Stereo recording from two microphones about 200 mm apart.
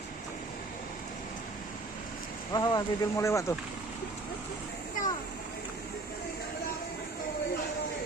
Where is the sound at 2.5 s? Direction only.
20° left (ahead or behind).